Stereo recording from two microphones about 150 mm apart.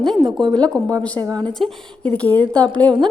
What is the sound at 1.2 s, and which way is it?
Speech, 25° right (ahead or behind).